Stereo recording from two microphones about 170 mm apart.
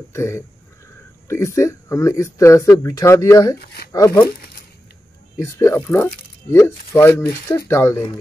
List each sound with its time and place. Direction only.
0.1 s speech: 15° left (ahead or behind)
5.4 s speech: 15° left (ahead or behind)